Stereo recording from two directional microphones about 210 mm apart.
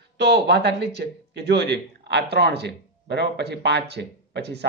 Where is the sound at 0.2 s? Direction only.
55° right (ahead or behind).